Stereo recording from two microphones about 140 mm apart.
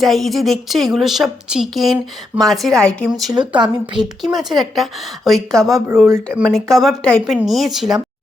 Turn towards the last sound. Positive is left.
turn(degrees=-5)  # may be behind; listen again after turning